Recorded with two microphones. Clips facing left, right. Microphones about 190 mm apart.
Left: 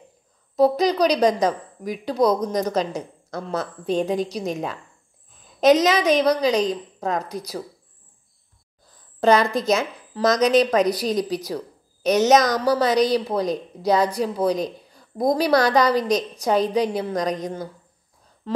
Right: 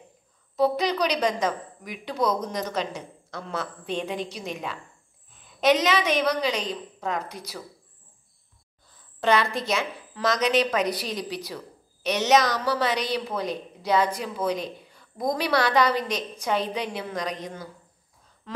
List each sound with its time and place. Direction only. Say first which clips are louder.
0.6 s a woman's voice: left 5 dB; 40° left (ahead or behind)
9.2 s a woman's voice: left 6 dB; 40° left (ahead or behind)